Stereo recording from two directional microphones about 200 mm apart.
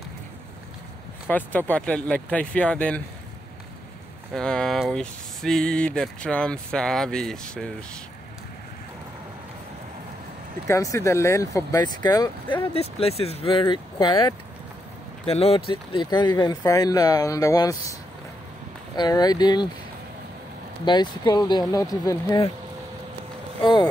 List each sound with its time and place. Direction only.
1.2 s speech: 10° left (ahead or behind)
4.3 s speech: 5° left (ahead or behind)
10.7 s speech: 15° left (ahead or behind)
12.7 s speech: 30° left (ahead or behind)
18.9 s speech: 20° left (ahead or behind)
20.8 s speech: 20° left (ahead or behind)
23.6 s speech: 20° left (ahead or behind)